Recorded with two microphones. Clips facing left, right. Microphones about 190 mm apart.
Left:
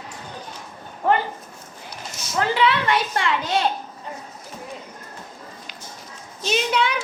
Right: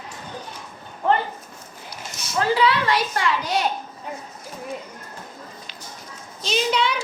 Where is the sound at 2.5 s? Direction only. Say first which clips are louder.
Left 1 dB; 25° left (ahead or behind).